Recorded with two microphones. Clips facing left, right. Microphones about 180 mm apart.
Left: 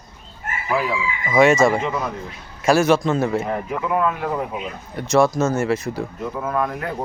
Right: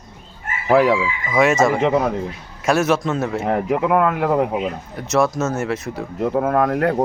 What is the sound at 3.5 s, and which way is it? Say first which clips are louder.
Speech: right 5 dB; 65° right (ahead or behind).